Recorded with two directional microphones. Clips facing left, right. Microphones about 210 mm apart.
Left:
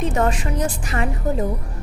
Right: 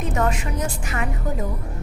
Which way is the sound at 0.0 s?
30° left (ahead or behind).